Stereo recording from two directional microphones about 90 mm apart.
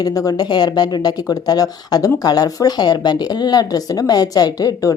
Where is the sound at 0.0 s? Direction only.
40° left (ahead or behind).